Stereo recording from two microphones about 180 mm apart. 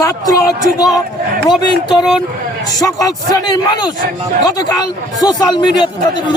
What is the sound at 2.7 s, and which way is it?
Speech, 20° left (ahead or behind).